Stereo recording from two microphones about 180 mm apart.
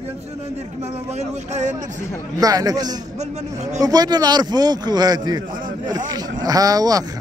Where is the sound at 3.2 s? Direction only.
40° right (ahead or behind).